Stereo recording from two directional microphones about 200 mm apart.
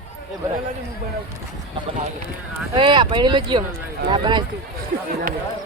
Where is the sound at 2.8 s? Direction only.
25° right (ahead or behind).